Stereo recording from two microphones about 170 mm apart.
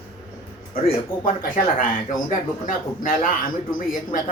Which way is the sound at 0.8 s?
55° left (ahead or behind).